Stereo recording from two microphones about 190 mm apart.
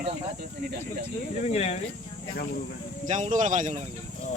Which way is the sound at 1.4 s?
35° left (ahead or behind).